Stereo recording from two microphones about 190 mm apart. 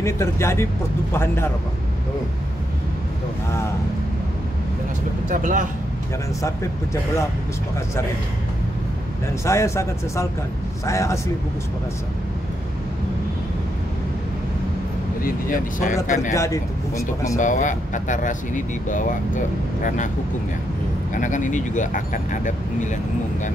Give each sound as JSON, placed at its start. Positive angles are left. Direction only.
{"t": 0.0, "sound": "speech", "side_deg": 15}
{"t": 5.3, "sound": "speech", "side_deg": -40}
{"t": 6.4, "sound": "speech", "side_deg": 15}
{"t": 9.4, "sound": "speech", "side_deg": 15}
{"t": 15.2, "sound": "speech", "side_deg": 45}
{"t": 16.3, "sound": "speech", "side_deg": 15}
{"t": 17.4, "sound": "speech", "side_deg": 40}
{"t": 21.1, "sound": "speech", "side_deg": 40}